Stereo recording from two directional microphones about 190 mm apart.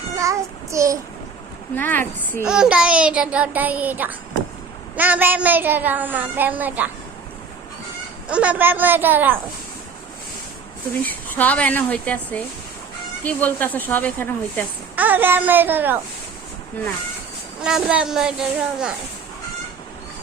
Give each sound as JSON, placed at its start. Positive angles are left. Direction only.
{"t": 0.2, "sound": "child singing", "side_deg": -15}
{"t": 1.7, "sound": "speech", "side_deg": 10}
{"t": 2.5, "sound": "a woman's voice", "side_deg": -5}
{"t": 8.3, "sound": "a woman's voice", "side_deg": -5}
{"t": 11.0, "sound": "speech", "side_deg": 10}
{"t": 14.9, "sound": "a woman's voice", "side_deg": -10}
{"t": 17.6, "sound": "a woman's voice", "side_deg": -5}